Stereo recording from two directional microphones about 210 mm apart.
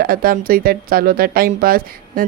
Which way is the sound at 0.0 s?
45° right (ahead or behind).